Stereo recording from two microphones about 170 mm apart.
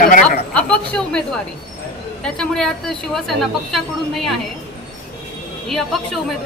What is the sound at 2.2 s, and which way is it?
A woman's voice, 5° left (ahead or behind).